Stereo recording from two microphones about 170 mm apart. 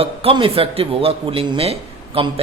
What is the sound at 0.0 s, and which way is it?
Speech, 35° right (ahead or behind).